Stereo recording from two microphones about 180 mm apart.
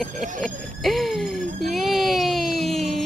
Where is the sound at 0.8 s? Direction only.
Centre (ahead or behind).